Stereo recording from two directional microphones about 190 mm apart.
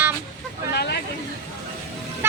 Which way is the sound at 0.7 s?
55° left (ahead or behind).